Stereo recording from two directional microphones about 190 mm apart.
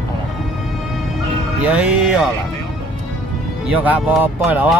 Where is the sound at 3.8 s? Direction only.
10° right (ahead or behind).